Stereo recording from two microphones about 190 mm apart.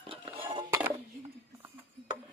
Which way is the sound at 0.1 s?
30° right (ahead or behind).